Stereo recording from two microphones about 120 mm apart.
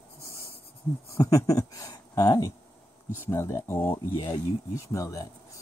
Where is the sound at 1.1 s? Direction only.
25° left (ahead or behind).